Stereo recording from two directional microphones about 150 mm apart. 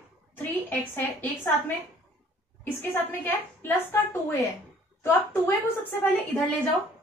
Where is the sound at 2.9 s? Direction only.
15° left (ahead or behind).